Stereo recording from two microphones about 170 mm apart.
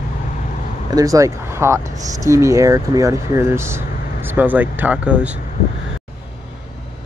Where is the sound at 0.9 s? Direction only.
20° right (ahead or behind).